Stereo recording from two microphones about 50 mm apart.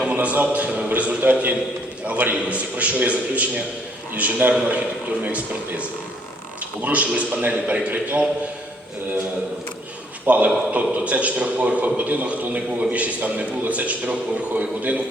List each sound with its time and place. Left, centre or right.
0.0 s a man's voice: right
10.2 s a man's voice: right